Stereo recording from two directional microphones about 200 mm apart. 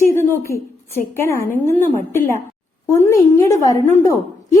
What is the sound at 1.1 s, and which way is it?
A woman's voice, 10° left (ahead or behind).